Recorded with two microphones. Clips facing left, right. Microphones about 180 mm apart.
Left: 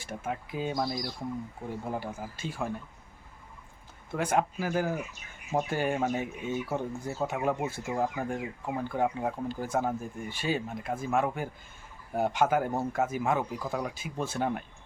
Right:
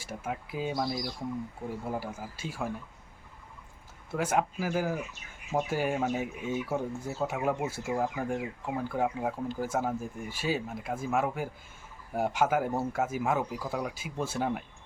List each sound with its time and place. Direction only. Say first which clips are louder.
0.0 s speech: left 1 dB; 5° right (ahead or behind)
4.1 s speech: left 1 dB; 5° right (ahead or behind)
8.0 s speech: even; 5° left (ahead or behind)